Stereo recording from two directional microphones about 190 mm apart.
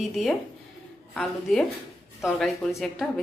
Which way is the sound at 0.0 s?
Centre (ahead or behind).